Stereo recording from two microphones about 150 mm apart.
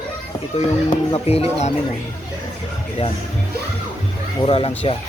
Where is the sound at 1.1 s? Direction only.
40° left (ahead or behind).